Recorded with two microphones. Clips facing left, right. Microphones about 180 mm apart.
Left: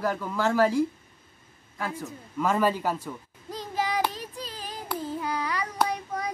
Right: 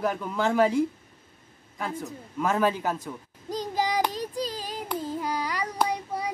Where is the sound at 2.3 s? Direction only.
10° right (ahead or behind).